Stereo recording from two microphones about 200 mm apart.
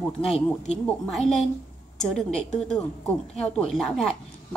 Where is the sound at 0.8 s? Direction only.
5° left (ahead or behind).